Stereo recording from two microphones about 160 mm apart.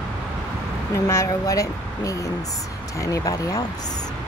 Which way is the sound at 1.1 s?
20° left (ahead or behind).